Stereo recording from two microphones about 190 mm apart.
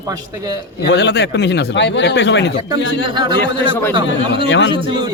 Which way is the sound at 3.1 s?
25° right (ahead or behind).